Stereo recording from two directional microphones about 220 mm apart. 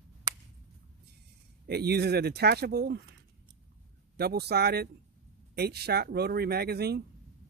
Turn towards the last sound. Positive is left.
turn(degrees=-45)  # may be behind; listen again after turning